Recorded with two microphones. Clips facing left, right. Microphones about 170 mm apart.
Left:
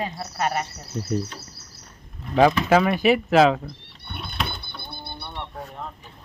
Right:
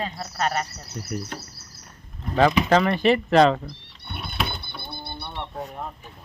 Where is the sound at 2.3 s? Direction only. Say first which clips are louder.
Left 2 dB; 40° right (ahead or behind).